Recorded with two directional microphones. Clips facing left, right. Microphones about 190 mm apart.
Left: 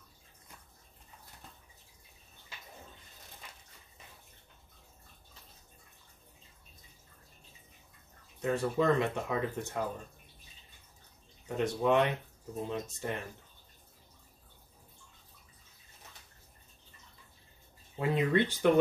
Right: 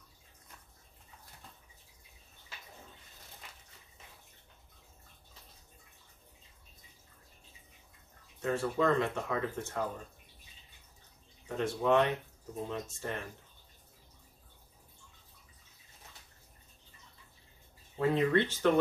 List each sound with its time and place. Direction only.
8.4 s speech: 15° left (ahead or behind)
11.4 s speech: 15° left (ahead or behind)
17.9 s speech: 15° left (ahead or behind)